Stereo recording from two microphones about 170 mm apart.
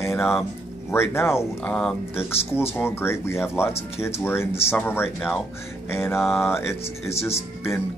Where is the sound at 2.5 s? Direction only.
15° left (ahead or behind).